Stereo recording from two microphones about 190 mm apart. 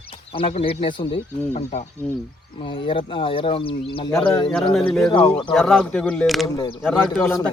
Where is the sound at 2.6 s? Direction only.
25° left (ahead or behind).